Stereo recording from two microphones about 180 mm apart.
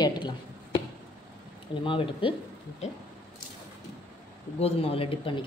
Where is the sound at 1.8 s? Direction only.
30° left (ahead or behind).